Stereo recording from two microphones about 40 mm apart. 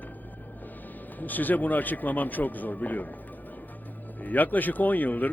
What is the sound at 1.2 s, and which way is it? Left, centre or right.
A man's voice, left.